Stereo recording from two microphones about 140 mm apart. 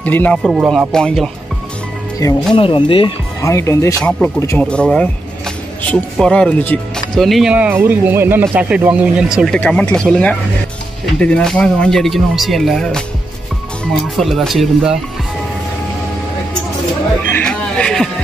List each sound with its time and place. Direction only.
0.0 s speech: 10° left (ahead or behind)
0.4 s speech: centre (ahead or behind)
2.5 s speech: 40° left (ahead or behind)
3.4 s speech: 20° left (ahead or behind)
4.6 s speech: 5° left (ahead or behind)
7.2 s speech: centre (ahead or behind)
9.5 s speech: 10° left (ahead or behind)
14.1 s speech: centre (ahead or behind)
17.3 s speech: 10° left (ahead or behind)